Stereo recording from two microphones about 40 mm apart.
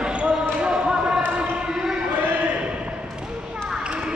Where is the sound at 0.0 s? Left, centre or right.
Right.